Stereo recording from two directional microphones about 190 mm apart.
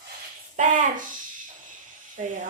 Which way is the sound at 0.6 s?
45° right (ahead or behind).